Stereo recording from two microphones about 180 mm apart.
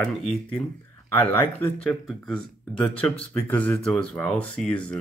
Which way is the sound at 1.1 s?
10° left (ahead or behind).